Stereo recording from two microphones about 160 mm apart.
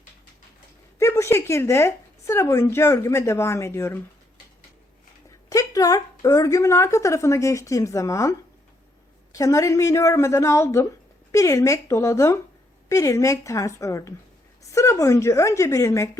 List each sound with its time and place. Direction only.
0.9 s speech: 15° left (ahead or behind)
5.5 s a woman's voice: 20° left (ahead or behind)